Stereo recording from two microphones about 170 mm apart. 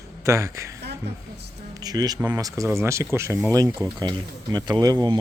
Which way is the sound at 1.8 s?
20° right (ahead or behind).